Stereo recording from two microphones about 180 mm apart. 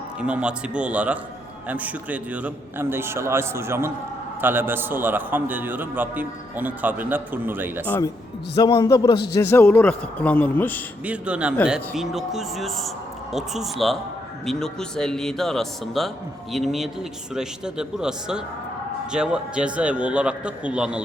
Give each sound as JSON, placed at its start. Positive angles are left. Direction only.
{"t": 0.2, "sound": "a man's voice", "side_deg": -5}
{"t": 7.9, "sound": "a man's voice", "side_deg": 15}
{"t": 11.0, "sound": "a man's voice", "side_deg": -5}